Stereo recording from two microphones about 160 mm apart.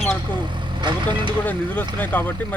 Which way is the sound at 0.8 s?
30° right (ahead or behind).